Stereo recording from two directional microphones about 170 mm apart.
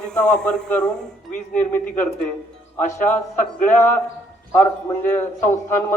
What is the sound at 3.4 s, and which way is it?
Speech, 45° left (ahead or behind).